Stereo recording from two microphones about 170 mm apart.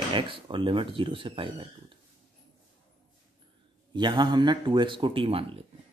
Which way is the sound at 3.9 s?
25° right (ahead or behind).